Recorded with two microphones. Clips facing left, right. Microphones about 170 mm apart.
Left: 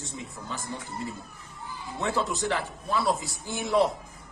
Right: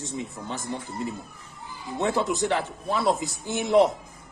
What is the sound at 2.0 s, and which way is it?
A man's voice, 20° right (ahead or behind).